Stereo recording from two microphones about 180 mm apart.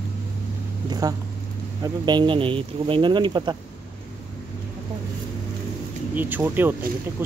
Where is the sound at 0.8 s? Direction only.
20° right (ahead or behind).